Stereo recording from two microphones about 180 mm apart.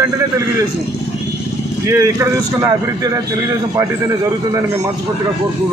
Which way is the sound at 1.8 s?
15° right (ahead or behind).